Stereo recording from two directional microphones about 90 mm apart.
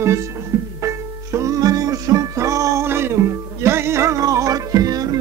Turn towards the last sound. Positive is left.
turn(degrees=-45)  # may be behind; listen again after turning